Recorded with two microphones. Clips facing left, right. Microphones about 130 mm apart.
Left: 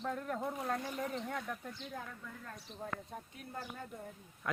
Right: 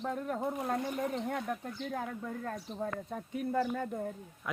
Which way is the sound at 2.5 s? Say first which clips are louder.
Right 7 dB; 90° right.